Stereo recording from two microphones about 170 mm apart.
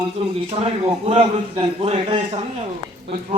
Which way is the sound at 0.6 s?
35° right (ahead or behind).